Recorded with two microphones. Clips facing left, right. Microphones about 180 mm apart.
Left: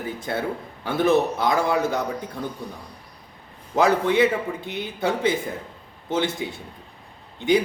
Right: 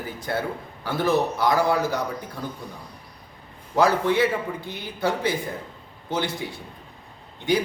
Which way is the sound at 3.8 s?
20° left (ahead or behind).